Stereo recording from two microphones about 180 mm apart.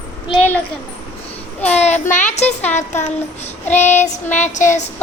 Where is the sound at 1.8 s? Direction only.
40° left (ahead or behind).